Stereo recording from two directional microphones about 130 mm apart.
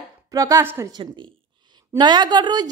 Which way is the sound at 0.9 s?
40° right (ahead or behind).